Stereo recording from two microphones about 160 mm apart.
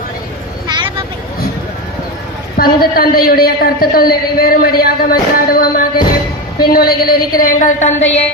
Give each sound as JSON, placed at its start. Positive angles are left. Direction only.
{"t": 0.7, "sound": "vehicle", "side_deg": -30}
{"t": 2.6, "sound": "a woman's voice", "side_deg": 65}